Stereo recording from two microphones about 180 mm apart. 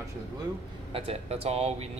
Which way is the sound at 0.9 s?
30° right (ahead or behind).